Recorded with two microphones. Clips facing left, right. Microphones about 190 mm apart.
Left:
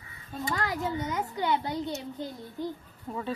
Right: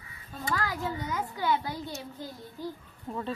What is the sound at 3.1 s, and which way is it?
Speech, 5° left (ahead or behind).